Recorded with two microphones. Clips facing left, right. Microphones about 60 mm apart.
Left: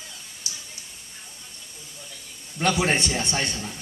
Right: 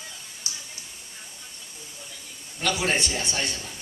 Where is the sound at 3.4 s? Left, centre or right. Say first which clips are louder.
Left 2 dB; left.